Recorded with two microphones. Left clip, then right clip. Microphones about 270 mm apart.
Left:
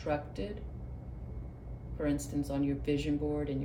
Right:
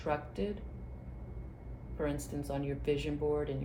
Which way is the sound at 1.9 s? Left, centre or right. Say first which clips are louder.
Left 3 dB; centre.